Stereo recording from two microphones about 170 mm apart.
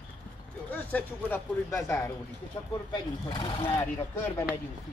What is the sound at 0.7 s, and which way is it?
Speech, 10° left (ahead or behind).